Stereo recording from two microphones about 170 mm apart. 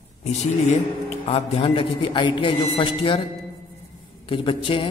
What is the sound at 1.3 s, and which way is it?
A man's voice, 35° left (ahead or behind).